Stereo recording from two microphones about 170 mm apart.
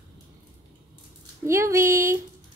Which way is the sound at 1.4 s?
15° right (ahead or behind).